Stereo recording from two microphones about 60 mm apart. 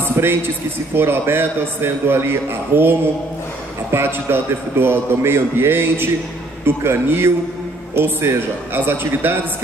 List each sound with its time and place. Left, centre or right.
0.2 s a man's voice: right